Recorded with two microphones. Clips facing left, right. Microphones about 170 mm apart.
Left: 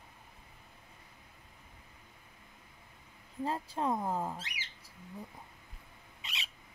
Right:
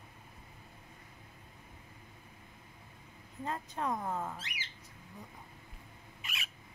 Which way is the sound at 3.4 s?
30° left (ahead or behind).